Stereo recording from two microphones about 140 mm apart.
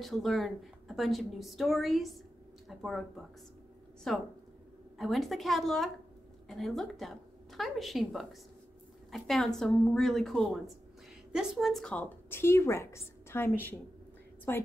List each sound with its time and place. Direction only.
0.0 s a woman's voice: centre (ahead or behind)